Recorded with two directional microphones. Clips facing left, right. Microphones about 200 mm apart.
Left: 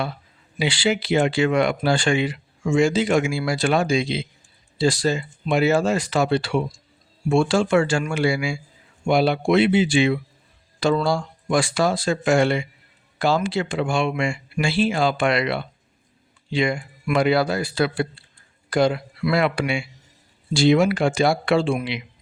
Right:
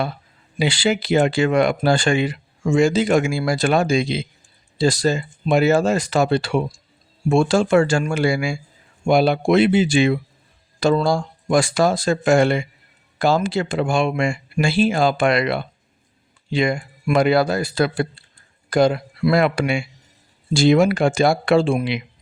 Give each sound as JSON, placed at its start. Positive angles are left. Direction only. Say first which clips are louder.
{"t": 0.6, "sound": "speech", "louder": "right 2 dB", "side_deg": -40}